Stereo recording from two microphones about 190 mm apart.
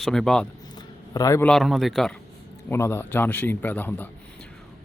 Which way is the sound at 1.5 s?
Centre (ahead or behind).